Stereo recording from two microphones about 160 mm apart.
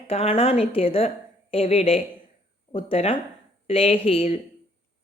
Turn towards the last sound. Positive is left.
turn(degrees=40)  # may be behind; listen again after turning